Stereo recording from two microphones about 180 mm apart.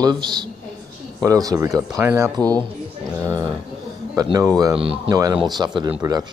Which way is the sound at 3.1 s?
20° right (ahead or behind).